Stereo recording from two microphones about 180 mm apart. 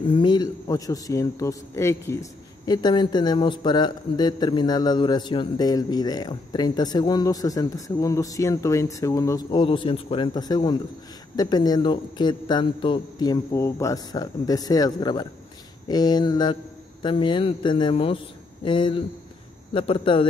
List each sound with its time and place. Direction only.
0.1 s a man's voice: 25° left (ahead or behind)